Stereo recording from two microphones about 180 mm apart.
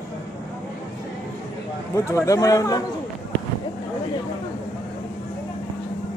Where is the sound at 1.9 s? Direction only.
15° left (ahead or behind).